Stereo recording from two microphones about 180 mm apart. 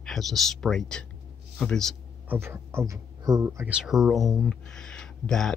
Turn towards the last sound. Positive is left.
turn(degrees=5)  # may be behind; listen again after turning